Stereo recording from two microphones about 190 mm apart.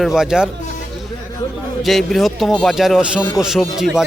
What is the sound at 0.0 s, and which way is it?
Speech, centre (ahead or behind).